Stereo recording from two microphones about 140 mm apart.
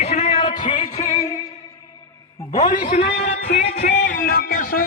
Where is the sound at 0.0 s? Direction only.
50° left (ahead or behind).